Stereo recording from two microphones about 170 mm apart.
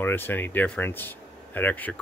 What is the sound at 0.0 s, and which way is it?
Speech, 10° left (ahead or behind).